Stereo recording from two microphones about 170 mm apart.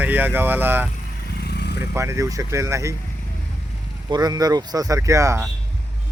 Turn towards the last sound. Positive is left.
turn(degrees=-15)  # may be behind; listen again after turning